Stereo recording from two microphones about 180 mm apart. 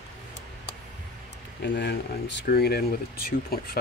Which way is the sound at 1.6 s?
75° left (ahead or behind).